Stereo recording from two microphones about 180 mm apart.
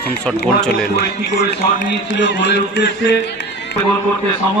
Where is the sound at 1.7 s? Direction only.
80° left.